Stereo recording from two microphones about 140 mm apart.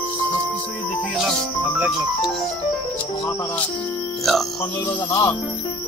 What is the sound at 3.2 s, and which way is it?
Music, 20° left (ahead or behind).